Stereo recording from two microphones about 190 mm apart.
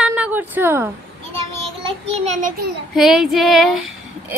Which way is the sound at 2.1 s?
35° right (ahead or behind).